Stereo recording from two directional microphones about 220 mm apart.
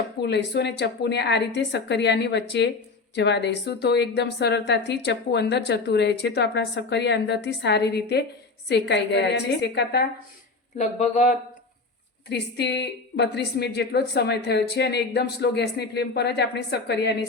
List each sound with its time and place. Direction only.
0.2 s a woman's voice: 50° left (ahead or behind)
10.8 s speech: 30° left (ahead or behind)
12.3 s a woman's voice: 50° left (ahead or behind)